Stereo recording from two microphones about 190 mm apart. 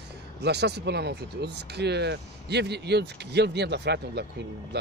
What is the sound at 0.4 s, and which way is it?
Speech, 60° right (ahead or behind).